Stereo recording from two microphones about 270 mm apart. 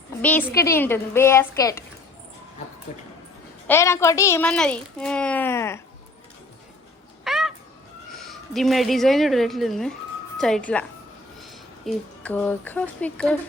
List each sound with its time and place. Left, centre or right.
0.2 s a woman's voice: centre
2.9 s speech: left
3.7 s a woman's voice: centre
7.3 s cat: centre
8.1 s a woman's voice: centre